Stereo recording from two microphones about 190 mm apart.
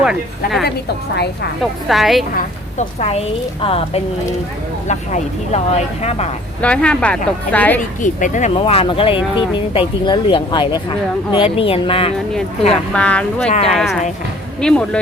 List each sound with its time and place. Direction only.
0.0 s a woman's voice: centre (ahead or behind)
1.1 s a woman's voice: 60° left (ahead or behind)
1.9 s a woman's voice: centre (ahead or behind)
2.3 s a woman's voice: 35° left (ahead or behind)
6.6 s speech: 5° left (ahead or behind)
8.0 s speech: 40° left (ahead or behind)
12.9 s a woman's voice: 5° left (ahead or behind)
13.5 s a woman's voice: 35° left (ahead or behind)
14.6 s a woman's voice: 5° left (ahead or behind)